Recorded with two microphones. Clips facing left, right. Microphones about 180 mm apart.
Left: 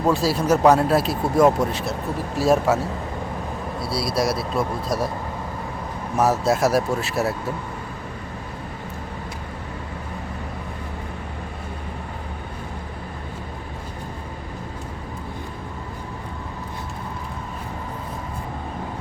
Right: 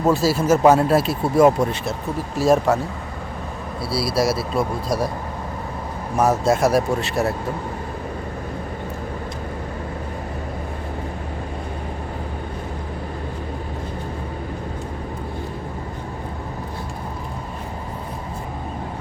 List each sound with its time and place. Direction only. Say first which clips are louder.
0.0 s speech: right 2 dB; centre (ahead or behind)
3.8 s speech: right 3 dB; centre (ahead or behind)
6.1 s speech: right 2 dB; centre (ahead or behind)